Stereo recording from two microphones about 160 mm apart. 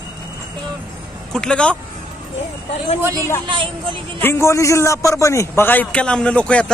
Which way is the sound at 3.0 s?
15° right (ahead or behind).